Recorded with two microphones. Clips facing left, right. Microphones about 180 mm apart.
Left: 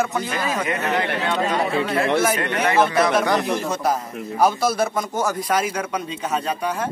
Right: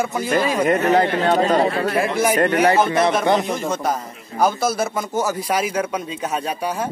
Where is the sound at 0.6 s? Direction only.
40° right (ahead or behind).